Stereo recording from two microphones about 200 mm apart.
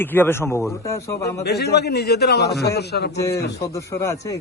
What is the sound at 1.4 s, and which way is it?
A man's voice, 55° left (ahead or behind).